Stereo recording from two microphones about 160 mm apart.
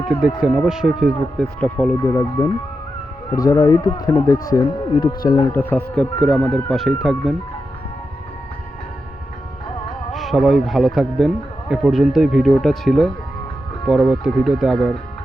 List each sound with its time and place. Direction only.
0.2 s speech: 5° right (ahead or behind); by 2.5 s 20° left (ahead or behind)
3.5 s a man's voice: 20° left (ahead or behind)
5.3 s speech: 15° left (ahead or behind); by 7.3 s centre (ahead or behind)
10.1 s a man's voice: centre (ahead or behind)